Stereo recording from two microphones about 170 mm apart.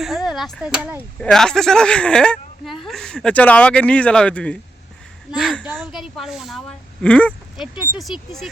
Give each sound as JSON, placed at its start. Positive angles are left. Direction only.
{"t": 0.0, "sound": "speech", "side_deg": 0}